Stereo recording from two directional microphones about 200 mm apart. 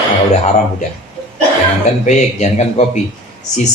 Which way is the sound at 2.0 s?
35° left (ahead or behind).